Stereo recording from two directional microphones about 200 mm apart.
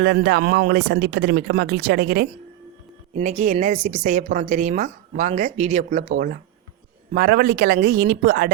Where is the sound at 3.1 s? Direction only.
35° right (ahead or behind).